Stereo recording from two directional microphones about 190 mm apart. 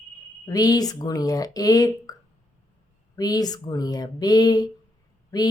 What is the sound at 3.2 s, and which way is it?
Speech, 20° left (ahead or behind).